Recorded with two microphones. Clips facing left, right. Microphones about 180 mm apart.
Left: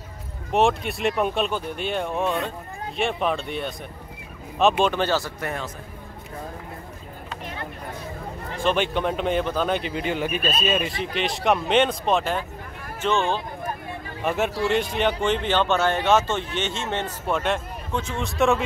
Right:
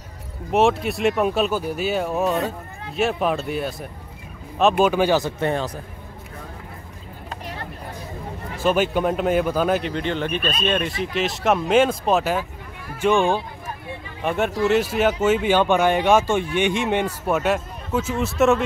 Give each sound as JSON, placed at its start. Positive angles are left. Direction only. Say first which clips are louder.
{"t": 0.5, "sound": "speech", "louder": "right 3 dB", "side_deg": 0}
{"t": 8.5, "sound": "speech", "louder": "right 3 dB", "side_deg": -5}
{"t": 14.2, "sound": "speech", "louder": "right 3 dB", "side_deg": 0}